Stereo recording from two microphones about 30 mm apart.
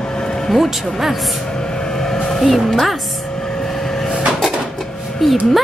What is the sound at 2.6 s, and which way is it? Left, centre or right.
Speech, centre.